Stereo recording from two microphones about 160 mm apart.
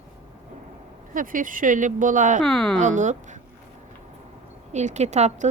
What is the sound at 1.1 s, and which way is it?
Speech, 60° right (ahead or behind).